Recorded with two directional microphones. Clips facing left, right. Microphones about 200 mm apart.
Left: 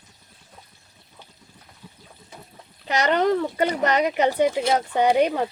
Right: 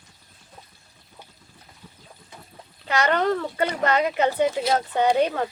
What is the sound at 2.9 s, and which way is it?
Speech, 15° left (ahead or behind).